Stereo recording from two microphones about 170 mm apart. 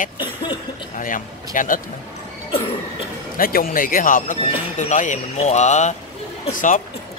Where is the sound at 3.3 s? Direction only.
60° left (ahead or behind).